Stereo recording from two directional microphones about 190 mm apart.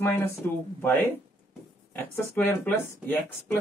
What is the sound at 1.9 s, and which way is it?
Speech, 10° left (ahead or behind).